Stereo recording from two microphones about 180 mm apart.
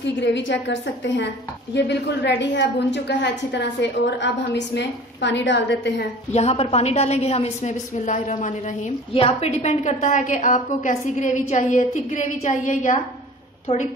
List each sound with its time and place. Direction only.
0.0 s a woman's voice: 80° left
6.3 s a woman's voice: 35° left (ahead or behind)